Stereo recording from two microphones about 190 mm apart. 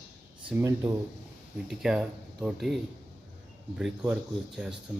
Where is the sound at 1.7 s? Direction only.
5° right (ahead or behind).